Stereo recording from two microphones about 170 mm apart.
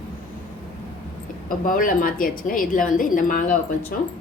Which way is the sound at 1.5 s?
55° left (ahead or behind).